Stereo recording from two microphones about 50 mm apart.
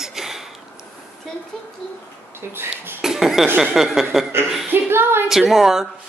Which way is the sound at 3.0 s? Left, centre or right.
Centre.